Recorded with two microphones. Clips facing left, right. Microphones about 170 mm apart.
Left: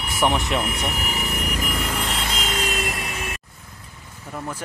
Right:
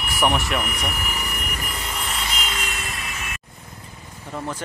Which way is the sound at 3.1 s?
30° left (ahead or behind).